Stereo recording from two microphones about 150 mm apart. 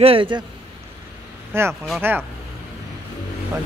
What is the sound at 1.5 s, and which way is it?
Speech, 15° right (ahead or behind).